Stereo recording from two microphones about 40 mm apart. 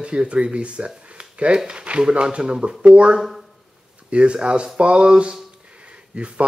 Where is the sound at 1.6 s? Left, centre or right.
Right.